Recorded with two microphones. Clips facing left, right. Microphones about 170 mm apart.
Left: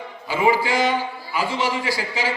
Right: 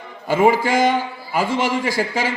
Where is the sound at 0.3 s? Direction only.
45° right (ahead or behind).